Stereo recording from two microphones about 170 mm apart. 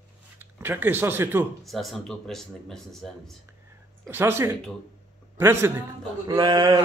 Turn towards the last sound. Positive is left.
turn(degrees=-25)  # may be behind; listen again after turning